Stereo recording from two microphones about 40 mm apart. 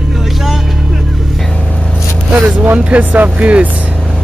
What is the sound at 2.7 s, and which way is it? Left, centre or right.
Speech, right.